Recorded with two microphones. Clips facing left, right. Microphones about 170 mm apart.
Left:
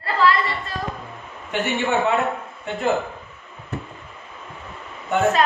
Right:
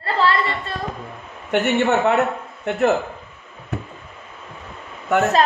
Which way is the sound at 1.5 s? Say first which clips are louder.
Right 4 dB; 70° right (ahead or behind).